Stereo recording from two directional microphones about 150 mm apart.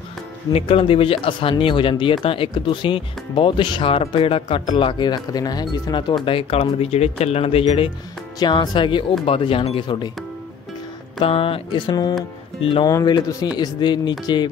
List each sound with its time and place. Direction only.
0.5 s speech: 40° left (ahead or behind)
11.1 s speech: 40° left (ahead or behind)